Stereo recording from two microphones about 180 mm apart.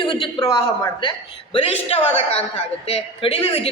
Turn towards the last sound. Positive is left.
turn(degrees=35)  # may be behind; listen again after turning